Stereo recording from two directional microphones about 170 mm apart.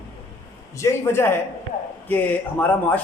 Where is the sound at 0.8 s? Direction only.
15° left (ahead or behind).